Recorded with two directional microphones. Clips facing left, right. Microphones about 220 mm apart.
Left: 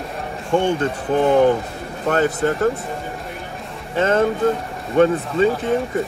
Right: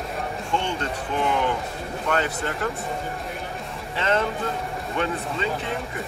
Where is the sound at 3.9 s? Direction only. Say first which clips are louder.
Left 7 dB; 45° left (ahead or behind).